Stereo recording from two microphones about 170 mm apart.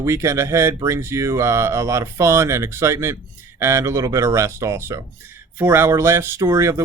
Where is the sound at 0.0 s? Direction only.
15° right (ahead or behind).